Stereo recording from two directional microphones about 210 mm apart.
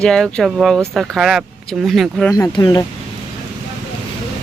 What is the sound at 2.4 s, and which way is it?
Speech, 15° left (ahead or behind).